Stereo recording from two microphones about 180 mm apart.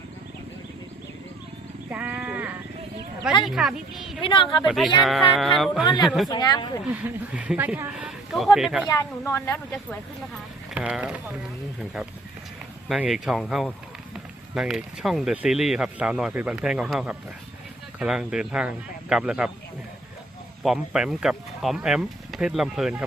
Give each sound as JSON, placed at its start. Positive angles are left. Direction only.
{"t": 1.9, "sound": "sheep", "side_deg": -10}
{"t": 3.4, "sound": "speech", "side_deg": 0}
{"t": 4.2, "sound": "speech", "side_deg": 30}
{"t": 4.6, "sound": "speech", "side_deg": 0}
{"t": 5.8, "sound": "speech", "side_deg": 25}
{"t": 6.8, "sound": "speech", "side_deg": -5}
{"t": 8.9, "sound": "a woman's voice", "side_deg": 15}
{"t": 10.8, "sound": "speech", "side_deg": -5}
{"t": 20.7, "sound": "speech", "side_deg": 0}